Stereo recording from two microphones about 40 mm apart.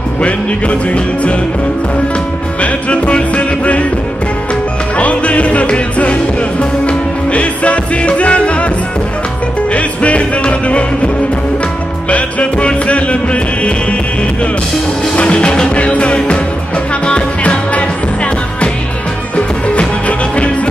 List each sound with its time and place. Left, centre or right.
0.2 s music: left
2.6 s music: left
4.9 s music: left
9.7 s music: left
12.1 s music: left
15.1 s music: left